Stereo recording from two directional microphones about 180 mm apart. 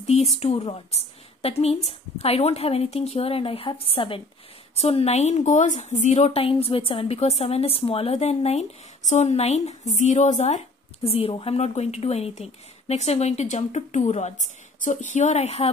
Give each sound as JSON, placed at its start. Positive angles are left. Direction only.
{"t": 0.0, "sound": "a woman's voice", "side_deg": 40}